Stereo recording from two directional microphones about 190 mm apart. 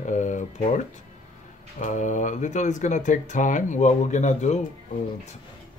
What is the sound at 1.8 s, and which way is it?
Speech, 40° left (ahead or behind).